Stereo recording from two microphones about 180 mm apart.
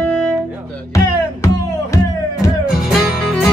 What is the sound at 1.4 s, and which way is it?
Music, 15° left (ahead or behind).